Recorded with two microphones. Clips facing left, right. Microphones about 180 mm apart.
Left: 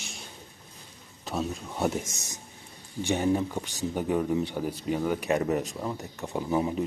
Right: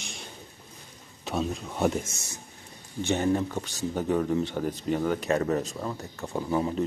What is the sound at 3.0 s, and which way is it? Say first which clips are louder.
Speech: even; 10° left (ahead or behind).